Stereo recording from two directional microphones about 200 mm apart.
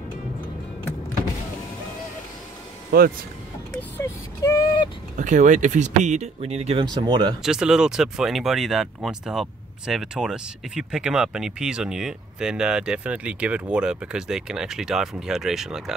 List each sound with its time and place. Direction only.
3.7 s a sound: 15° left (ahead or behind)
5.1 s speech: 40° right (ahead or behind)
7.4 s speech: 5° right (ahead or behind)